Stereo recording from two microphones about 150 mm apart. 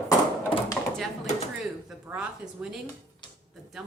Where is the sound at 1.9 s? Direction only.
5° right (ahead or behind).